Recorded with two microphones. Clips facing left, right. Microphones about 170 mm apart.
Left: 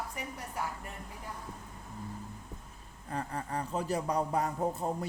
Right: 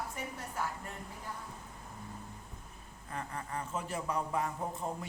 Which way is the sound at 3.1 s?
35° left (ahead or behind).